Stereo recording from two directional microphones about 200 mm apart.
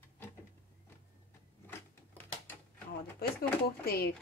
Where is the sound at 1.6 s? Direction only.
10° left (ahead or behind).